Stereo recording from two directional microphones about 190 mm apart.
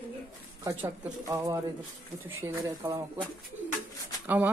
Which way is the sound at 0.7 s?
20° right (ahead or behind).